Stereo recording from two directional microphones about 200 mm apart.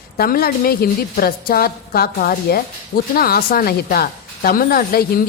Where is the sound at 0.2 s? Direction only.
50° left (ahead or behind).